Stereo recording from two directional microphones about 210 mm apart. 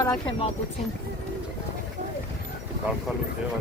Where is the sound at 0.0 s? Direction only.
25° left (ahead or behind).